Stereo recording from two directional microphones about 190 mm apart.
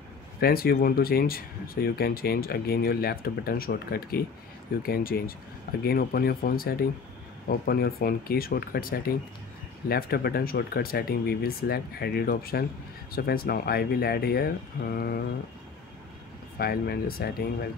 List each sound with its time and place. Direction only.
0.4 s speech: 50° left (ahead or behind)
16.5 s speech: 55° left (ahead or behind)